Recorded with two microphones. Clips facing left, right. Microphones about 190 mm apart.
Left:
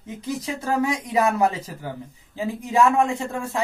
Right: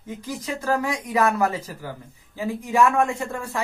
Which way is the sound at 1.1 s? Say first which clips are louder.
Even; 20° left (ahead or behind).